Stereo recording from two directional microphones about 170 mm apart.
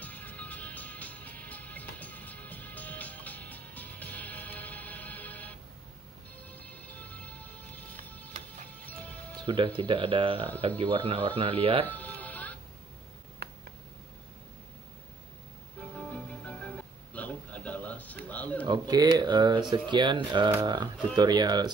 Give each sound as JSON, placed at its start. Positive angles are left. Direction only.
{"t": 0.0, "sound": "music", "side_deg": 10}
{"t": 9.5, "sound": "speech", "side_deg": -30}
{"t": 11.8, "sound": "music", "side_deg": 10}
{"t": 13.4, "sound": "a sound", "side_deg": -70}
{"t": 16.1, "sound": "music", "side_deg": 10}
{"t": 18.3, "sound": "a sound", "side_deg": 10}
{"t": 18.7, "sound": "speech", "side_deg": -25}